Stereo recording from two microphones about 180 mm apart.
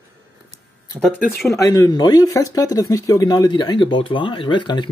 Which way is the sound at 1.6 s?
20° left (ahead or behind).